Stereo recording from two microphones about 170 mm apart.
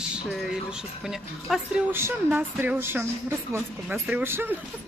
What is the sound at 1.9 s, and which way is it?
A woman's voice, 10° right (ahead or behind).